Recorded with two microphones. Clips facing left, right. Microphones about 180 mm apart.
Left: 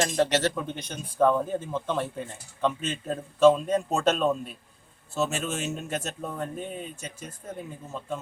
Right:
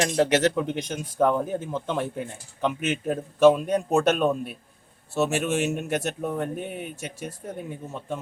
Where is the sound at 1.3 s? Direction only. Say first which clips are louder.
Right 1 dB; 10° right (ahead or behind).